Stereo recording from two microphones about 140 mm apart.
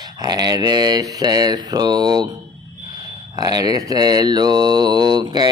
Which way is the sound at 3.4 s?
30° right (ahead or behind).